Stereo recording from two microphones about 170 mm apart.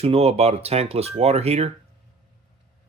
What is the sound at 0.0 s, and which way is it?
Speech, 35° right (ahead or behind).